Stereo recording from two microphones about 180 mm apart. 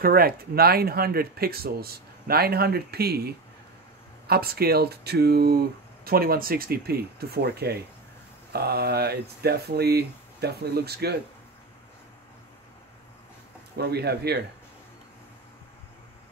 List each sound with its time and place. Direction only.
0.0 s speech: 55° right (ahead or behind)
13.7 s speech: 65° right (ahead or behind)